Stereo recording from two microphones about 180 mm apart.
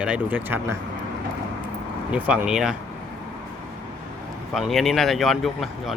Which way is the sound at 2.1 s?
5° right (ahead or behind).